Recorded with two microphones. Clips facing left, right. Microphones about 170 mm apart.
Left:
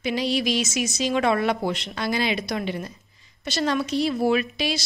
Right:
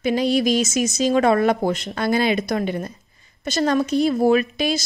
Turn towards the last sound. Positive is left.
turn(degrees=-45)  # may be behind; listen again after turning